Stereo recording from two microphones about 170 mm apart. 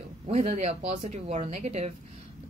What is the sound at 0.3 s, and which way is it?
Speech, 40° right (ahead or behind).